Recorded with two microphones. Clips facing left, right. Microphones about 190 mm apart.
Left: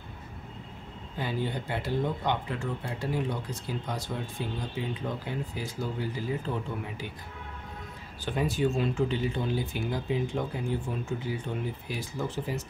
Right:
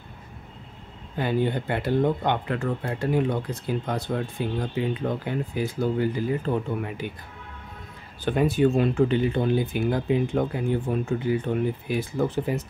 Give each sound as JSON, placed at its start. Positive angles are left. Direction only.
{"t": 1.1, "sound": "speech", "side_deg": -55}
{"t": 8.3, "sound": "speech", "side_deg": -60}